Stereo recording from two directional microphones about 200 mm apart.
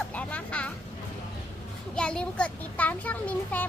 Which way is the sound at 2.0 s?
5° left (ahead or behind).